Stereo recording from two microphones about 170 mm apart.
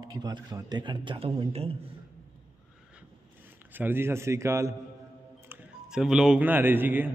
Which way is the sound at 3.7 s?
10° right (ahead or behind).